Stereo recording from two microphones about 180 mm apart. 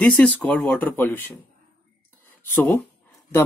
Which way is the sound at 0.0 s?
5° left (ahead or behind).